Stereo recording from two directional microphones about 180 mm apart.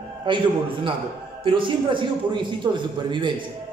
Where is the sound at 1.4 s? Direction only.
30° right (ahead or behind).